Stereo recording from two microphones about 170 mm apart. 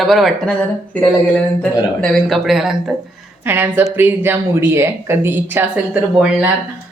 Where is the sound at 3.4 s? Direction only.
10° right (ahead or behind).